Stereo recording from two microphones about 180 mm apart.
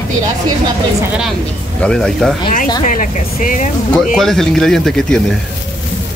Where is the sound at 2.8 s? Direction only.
45° left (ahead or behind).